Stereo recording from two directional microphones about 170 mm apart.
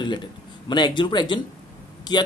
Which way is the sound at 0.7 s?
25° left (ahead or behind).